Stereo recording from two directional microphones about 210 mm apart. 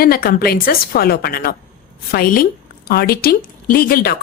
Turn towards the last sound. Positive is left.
turn(degrees=45)  # may be behind; listen again after turning